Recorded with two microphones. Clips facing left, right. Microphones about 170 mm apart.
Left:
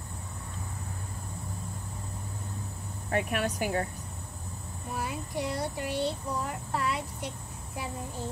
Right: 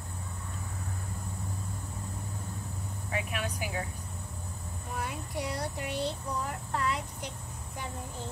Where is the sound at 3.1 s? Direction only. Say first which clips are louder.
Left 6 dB; 50° left (ahead or behind).